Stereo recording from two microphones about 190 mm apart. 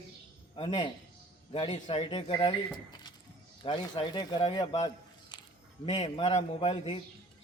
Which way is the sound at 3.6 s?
25° left (ahead or behind).